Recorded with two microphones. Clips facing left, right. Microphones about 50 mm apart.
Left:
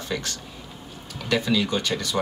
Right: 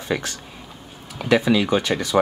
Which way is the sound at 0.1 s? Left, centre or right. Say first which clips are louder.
Right 6 dB; centre.